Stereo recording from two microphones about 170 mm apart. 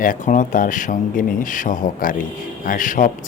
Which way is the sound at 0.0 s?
50° left (ahead or behind).